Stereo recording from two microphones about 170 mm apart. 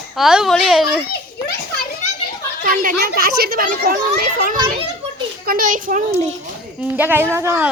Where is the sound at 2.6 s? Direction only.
55° right (ahead or behind).